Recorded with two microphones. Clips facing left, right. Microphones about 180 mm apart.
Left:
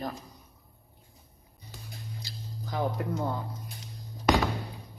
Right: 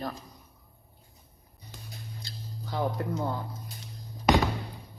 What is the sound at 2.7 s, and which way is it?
Music, 15° left (ahead or behind).